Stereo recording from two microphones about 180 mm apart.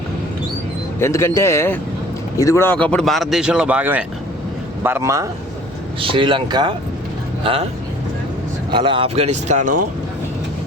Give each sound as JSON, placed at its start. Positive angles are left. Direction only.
{"t": 0.9, "sound": "a man's voice", "side_deg": 15}
{"t": 6.0, "sound": "speech", "side_deg": -30}
{"t": 8.7, "sound": "speech", "side_deg": -30}